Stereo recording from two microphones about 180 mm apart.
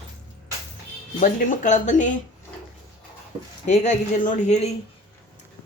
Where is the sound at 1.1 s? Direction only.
45° left (ahead or behind).